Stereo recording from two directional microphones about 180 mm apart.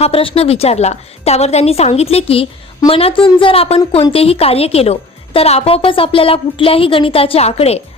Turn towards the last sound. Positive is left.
turn(degrees=35)  # may be behind; listen again after turning